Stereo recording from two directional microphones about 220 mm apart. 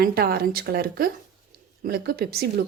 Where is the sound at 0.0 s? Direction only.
45° right (ahead or behind).